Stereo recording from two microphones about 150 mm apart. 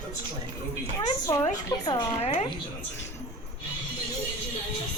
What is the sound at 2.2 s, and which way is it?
Speech, 45° left (ahead or behind).